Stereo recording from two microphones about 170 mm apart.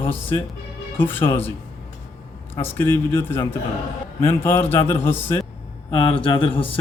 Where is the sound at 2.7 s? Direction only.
15° left (ahead or behind).